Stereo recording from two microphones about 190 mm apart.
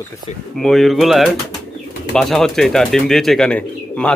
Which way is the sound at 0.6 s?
Centre (ahead or behind).